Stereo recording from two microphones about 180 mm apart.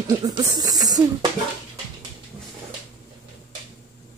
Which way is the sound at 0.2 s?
20° right (ahead or behind).